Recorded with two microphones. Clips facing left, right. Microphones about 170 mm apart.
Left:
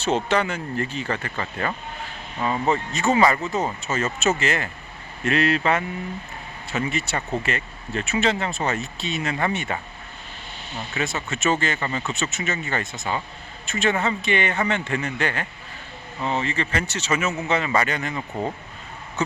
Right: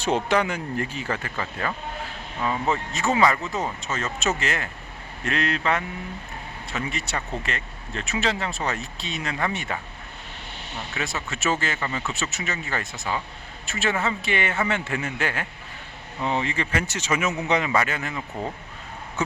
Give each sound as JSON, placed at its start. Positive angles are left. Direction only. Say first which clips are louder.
{"t": 0.0, "sound": "speech", "louder": "even", "side_deg": -10}
{"t": 10.9, "sound": "speech", "louder": "left 4 dB", "side_deg": 0}
{"t": 17.7, "sound": "speech", "louder": "left 1 dB", "side_deg": -5}